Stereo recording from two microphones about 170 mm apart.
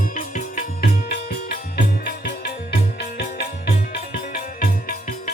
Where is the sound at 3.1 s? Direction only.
65° left (ahead or behind).